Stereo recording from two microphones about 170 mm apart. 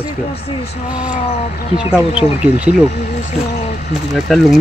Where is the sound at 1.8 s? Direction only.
5° right (ahead or behind).